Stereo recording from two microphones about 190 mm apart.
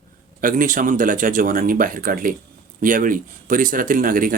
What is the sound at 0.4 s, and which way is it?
Speech, 45° right (ahead or behind).